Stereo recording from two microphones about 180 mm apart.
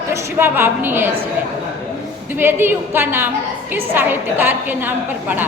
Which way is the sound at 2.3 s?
10° right (ahead or behind).